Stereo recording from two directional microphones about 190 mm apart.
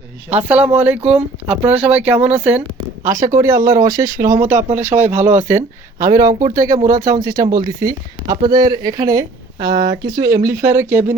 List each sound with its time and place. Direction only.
0.4 s speech: 10° right (ahead or behind)